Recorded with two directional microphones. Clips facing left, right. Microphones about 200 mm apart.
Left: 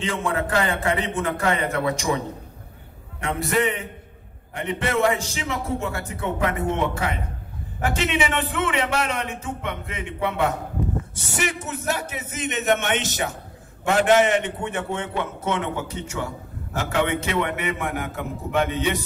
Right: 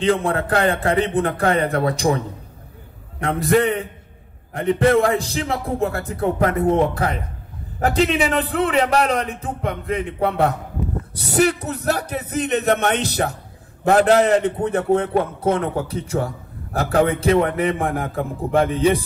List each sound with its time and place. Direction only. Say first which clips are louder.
0.0 s a man's voice: right 6 dB; 35° right (ahead or behind)